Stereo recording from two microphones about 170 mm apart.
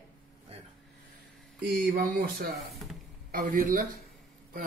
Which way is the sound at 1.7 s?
60° right (ahead or behind).